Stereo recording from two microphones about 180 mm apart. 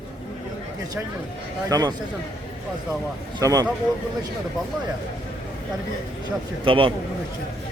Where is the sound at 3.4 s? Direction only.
20° right (ahead or behind).